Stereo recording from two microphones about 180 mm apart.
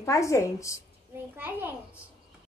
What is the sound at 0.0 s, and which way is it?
Speech, 15° left (ahead or behind).